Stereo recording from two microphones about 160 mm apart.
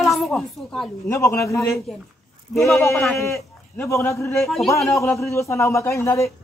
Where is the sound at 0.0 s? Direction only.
Centre (ahead or behind).